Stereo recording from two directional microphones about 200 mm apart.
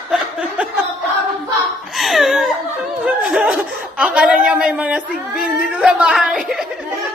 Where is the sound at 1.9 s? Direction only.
Centre (ahead or behind).